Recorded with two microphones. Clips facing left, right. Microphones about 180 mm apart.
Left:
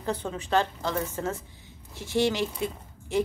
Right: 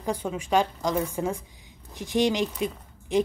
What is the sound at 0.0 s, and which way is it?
Speech, 10° right (ahead or behind).